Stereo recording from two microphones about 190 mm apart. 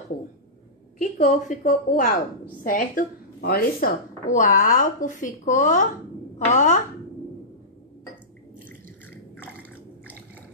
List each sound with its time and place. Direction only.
0.9 s a woman's voice: 40° left (ahead or behind)